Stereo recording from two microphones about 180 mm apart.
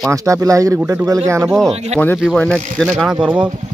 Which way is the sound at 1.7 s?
35° right (ahead or behind).